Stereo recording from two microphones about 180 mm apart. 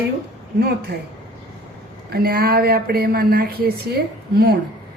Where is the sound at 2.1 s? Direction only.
60° right (ahead or behind).